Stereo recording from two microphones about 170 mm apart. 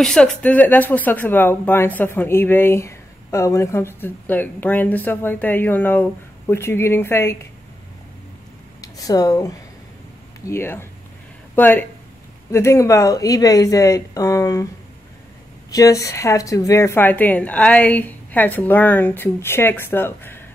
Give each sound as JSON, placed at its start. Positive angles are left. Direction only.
{"t": 0.0, "sound": "speech", "side_deg": 5}
{"t": 8.8, "sound": "speech", "side_deg": 20}
{"t": 15.7, "sound": "speech", "side_deg": 20}